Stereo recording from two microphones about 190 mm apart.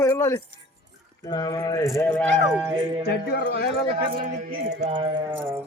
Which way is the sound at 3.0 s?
55° left (ahead or behind).